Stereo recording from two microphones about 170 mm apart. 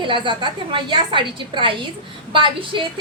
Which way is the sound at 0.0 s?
30° right (ahead or behind).